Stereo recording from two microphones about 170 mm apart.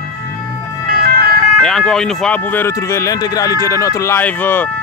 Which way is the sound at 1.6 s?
5° left (ahead or behind).